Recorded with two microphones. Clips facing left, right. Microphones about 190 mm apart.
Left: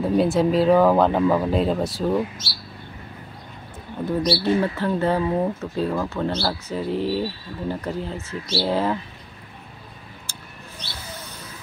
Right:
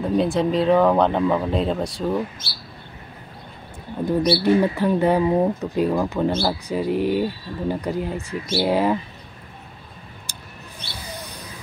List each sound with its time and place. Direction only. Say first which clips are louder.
0.0 s speech: left 1 dB; 5° left (ahead or behind)
2.4 s speech: left 1 dB; 55° right (ahead or behind)
4.4 s speech: right 3 dB; 15° right (ahead or behind)
10.3 s vehicle: even; 15° right (ahead or behind)
11.0 s a sound: right 4 dB; 15° right (ahead or behind)